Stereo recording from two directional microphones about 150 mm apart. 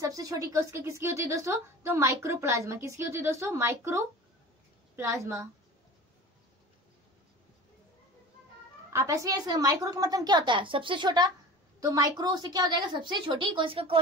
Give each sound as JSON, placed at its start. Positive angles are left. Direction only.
{"t": 0.0, "sound": "a woman's voice", "side_deg": -25}
{"t": 8.9, "sound": "a woman's voice", "side_deg": -20}